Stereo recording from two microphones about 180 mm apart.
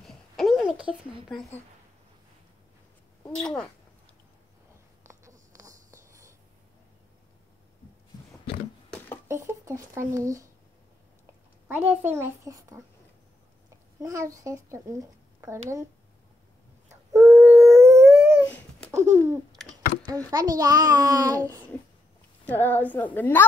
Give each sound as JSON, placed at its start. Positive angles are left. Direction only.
{"t": 0.0, "sound": "a sound", "side_deg": 0}
{"t": 3.3, "sound": "speech", "side_deg": 5}
{"t": 5.0, "sound": "a sound", "side_deg": -15}
{"t": 9.3, "sound": "speech", "side_deg": -15}
{"t": 11.6, "sound": "speech", "side_deg": -10}
{"t": 14.0, "sound": "speech", "side_deg": -15}
{"t": 16.9, "sound": "dog", "side_deg": -15}
{"t": 18.9, "sound": "babbling", "side_deg": -15}
{"t": 20.1, "sound": "a child's voice", "side_deg": -20}
{"t": 22.4, "sound": "a woman's voice", "side_deg": 10}